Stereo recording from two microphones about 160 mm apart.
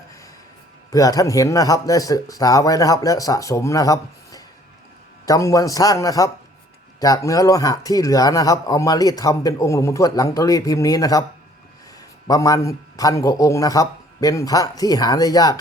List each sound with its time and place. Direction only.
0.9 s speech: 20° left (ahead or behind)
12.3 s speech: 20° left (ahead or behind)